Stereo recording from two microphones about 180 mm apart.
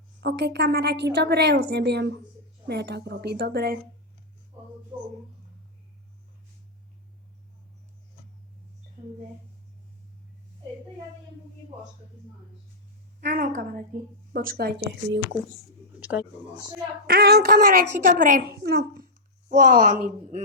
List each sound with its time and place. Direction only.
0.2 s a woman's voice: 65° right (ahead or behind)
13.2 s a woman's voice: 50° right (ahead or behind)
16.0 s a sound: 5° right (ahead or behind)
17.1 s a woman's voice: 60° right (ahead or behind)
19.5 s speech: 45° right (ahead or behind)